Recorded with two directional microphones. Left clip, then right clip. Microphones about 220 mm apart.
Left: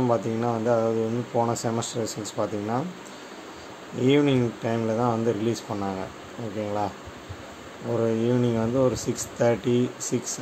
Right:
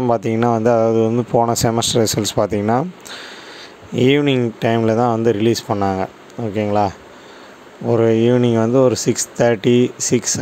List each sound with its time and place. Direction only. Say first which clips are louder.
0.0 s speech: right 8 dB; 40° right (ahead or behind)
4.0 s speech: right 6 dB; 40° right (ahead or behind)
7.9 s speech: right 10 dB; 40° right (ahead or behind)